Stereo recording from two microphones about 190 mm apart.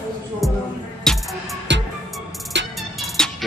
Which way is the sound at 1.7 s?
70° right (ahead or behind).